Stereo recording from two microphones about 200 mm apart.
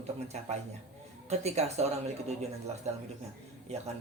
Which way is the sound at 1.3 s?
35° right (ahead or behind).